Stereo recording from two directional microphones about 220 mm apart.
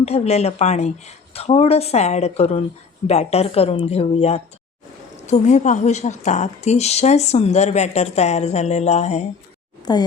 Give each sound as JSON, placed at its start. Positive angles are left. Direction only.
{"t": 0.0, "sound": "a woman's voice", "side_deg": 30}
{"t": 9.9, "sound": "a woman's voice", "side_deg": 20}